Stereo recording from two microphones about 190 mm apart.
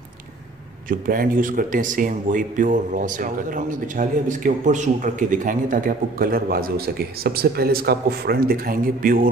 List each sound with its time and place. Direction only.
0.8 s speech: 45° right (ahead or behind)